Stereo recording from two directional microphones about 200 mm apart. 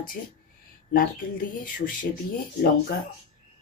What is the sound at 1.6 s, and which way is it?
Speech, 45° left (ahead or behind).